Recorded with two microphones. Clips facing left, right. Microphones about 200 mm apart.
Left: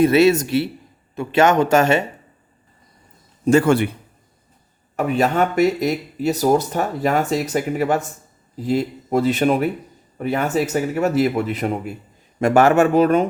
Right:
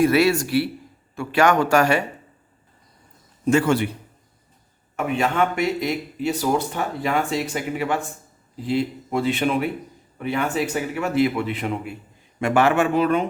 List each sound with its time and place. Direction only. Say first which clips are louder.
0.0 s speech: left 4 dB; 20° left (ahead or behind)
3.6 s speech: left 4 dB; 55° left (ahead or behind)
4.9 s speech: left 3 dB; 40° left (ahead or behind)